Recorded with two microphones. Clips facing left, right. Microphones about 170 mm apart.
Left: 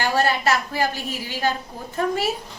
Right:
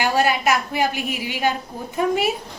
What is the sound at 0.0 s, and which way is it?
A woman's voice, 15° right (ahead or behind).